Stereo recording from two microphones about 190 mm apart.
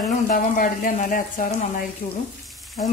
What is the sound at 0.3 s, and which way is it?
Speech, 45° left (ahead or behind).